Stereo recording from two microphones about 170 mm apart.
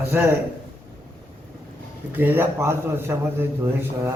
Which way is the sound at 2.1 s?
10° right (ahead or behind).